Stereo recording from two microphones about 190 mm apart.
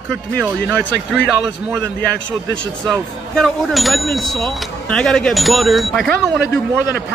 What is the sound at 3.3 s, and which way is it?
Speech, centre (ahead or behind).